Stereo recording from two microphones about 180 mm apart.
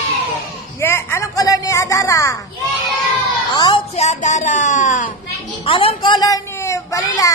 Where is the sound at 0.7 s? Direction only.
15° left (ahead or behind).